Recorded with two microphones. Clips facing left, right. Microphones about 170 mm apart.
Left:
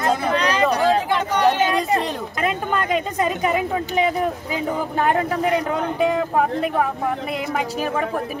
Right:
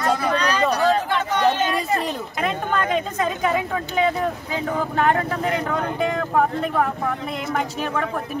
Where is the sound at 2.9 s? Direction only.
10° left (ahead or behind).